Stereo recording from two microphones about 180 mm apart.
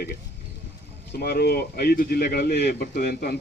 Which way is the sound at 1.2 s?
60° left (ahead or behind).